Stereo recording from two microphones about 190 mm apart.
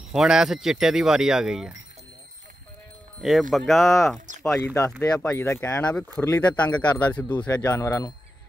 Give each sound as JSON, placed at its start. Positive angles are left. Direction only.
{"t": 0.1, "sound": "speech", "side_deg": -5}
{"t": 3.2, "sound": "speech", "side_deg": 0}
{"t": 5.1, "sound": "speech", "side_deg": 15}
{"t": 6.2, "sound": "speech", "side_deg": 20}
{"t": 6.5, "sound": "speech", "side_deg": 5}
{"t": 7.2, "sound": "speech", "side_deg": 20}